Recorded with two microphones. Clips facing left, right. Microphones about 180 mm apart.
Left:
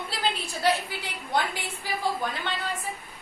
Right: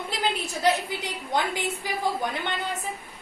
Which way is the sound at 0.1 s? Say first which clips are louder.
Right 2 dB; 20° right (ahead or behind).